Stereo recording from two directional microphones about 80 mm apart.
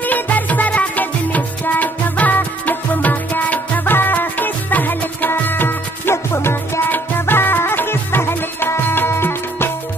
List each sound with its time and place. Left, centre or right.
0.0 s music: left